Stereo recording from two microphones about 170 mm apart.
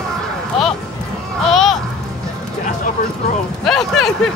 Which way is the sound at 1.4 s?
Centre (ahead or behind).